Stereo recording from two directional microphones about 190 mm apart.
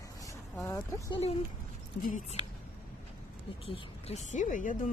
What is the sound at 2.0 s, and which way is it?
Speech, 45° left (ahead or behind).